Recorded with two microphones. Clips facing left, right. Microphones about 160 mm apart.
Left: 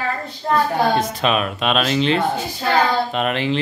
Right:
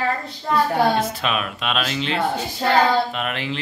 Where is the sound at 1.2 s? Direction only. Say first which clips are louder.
Left 5 dB; 35° left (ahead or behind).